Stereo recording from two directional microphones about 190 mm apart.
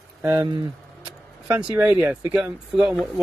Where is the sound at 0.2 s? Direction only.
15° right (ahead or behind).